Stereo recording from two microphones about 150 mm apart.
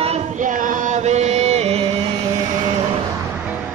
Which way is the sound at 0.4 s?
60° right (ahead or behind).